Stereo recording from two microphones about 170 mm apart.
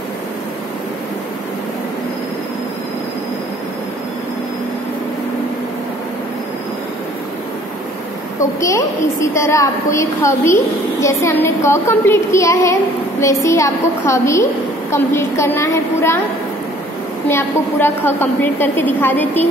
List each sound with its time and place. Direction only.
8.4 s a woman's voice: 20° left (ahead or behind)
17.3 s a woman's voice: 15° left (ahead or behind)